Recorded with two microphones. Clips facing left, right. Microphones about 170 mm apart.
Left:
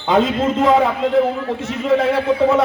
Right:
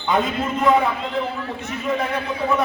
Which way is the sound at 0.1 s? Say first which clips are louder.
Left 5 dB; 90° left.